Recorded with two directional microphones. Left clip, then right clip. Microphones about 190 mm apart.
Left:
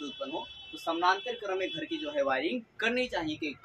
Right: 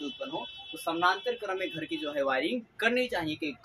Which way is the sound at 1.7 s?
30° right (ahead or behind).